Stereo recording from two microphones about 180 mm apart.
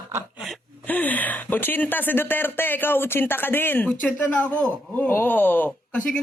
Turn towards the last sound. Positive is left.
turn(degrees=5)  # may be behind; listen again after turning